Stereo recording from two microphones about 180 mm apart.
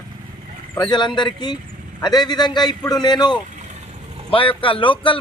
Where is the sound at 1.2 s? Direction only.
25° left (ahead or behind).